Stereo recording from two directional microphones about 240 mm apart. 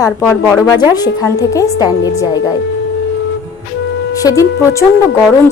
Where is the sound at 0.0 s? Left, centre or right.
Centre.